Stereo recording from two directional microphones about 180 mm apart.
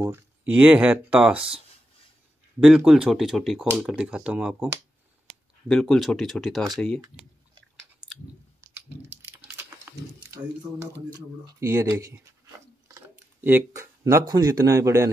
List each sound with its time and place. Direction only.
0.0 s speech: 10° right (ahead or behind)
2.6 s speech: 5° right (ahead or behind)
5.7 s speech: 5° left (ahead or behind)
8.0 s chewing: 20° right (ahead or behind)
8.5 s chewing: 10° right (ahead or behind)
9.5 s a sound: 10° right (ahead or behind)
11.4 s speech: 15° right (ahead or behind)